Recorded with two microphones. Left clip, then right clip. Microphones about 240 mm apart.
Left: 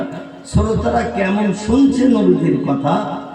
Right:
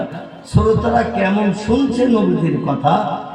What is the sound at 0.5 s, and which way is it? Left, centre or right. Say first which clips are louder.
Speech: right 2 dB; right.